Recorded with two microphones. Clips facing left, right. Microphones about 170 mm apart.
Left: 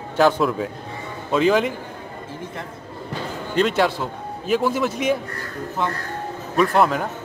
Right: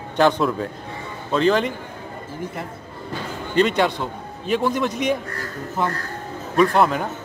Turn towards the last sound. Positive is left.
turn(degrees=0)  # may be behind; listen again after turning